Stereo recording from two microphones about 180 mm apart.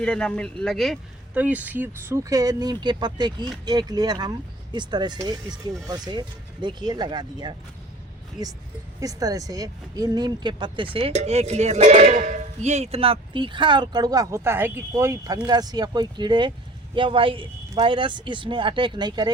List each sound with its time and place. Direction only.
0.0 s speech: 5° left (ahead or behind); by 7.5 s 25° right (ahead or behind)
9.0 s speech: 20° right (ahead or behind)